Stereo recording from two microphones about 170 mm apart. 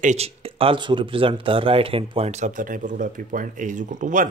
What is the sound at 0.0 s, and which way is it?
Speech, 40° right (ahead or behind).